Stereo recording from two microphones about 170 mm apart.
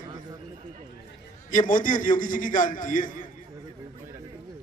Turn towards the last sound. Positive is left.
turn(degrees=50)  # may be behind; listen again after turning